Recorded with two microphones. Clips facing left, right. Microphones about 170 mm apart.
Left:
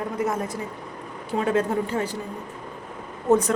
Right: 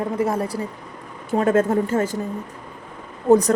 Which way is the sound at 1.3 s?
45° right (ahead or behind).